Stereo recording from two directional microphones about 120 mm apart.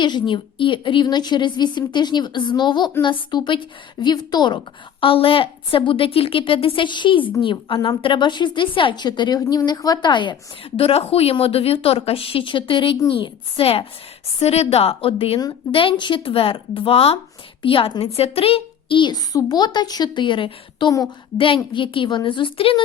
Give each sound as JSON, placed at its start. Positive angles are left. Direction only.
{"t": 0.0, "sound": "a woman's voice", "side_deg": 40}
{"t": 10.8, "sound": "a woman's voice", "side_deg": 55}
{"t": 14.3, "sound": "a woman's voice", "side_deg": 60}